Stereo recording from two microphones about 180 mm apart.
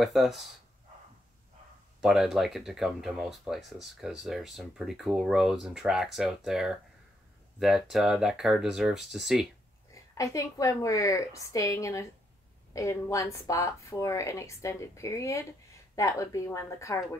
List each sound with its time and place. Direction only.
0.0 s speech: centre (ahead or behind)
2.0 s speech: centre (ahead or behind)
10.1 s a woman's voice: 15° left (ahead or behind)